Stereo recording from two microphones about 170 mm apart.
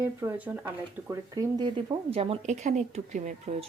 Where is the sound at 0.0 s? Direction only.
15° right (ahead or behind).